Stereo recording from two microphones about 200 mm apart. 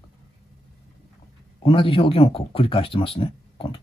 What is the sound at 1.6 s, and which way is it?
Speech, 25° left (ahead or behind).